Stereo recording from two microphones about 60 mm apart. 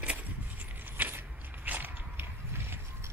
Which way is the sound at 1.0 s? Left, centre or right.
Right.